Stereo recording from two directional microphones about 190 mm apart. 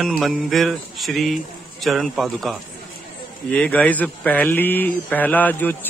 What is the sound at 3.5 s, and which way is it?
A man's voice, 5° left (ahead or behind).